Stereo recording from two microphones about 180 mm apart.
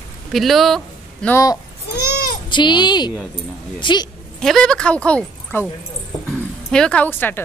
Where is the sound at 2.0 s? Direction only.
60° left (ahead or behind).